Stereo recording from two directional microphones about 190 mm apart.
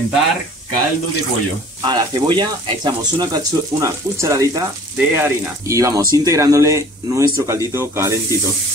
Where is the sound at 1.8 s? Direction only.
20° right (ahead or behind).